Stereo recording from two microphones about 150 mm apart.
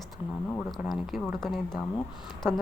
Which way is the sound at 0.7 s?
Centre (ahead or behind).